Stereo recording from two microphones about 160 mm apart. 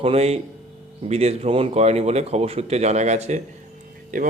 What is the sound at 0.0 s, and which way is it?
A man's voice, 40° right (ahead or behind).